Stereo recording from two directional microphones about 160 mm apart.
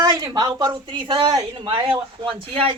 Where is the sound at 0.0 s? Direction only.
25° right (ahead or behind).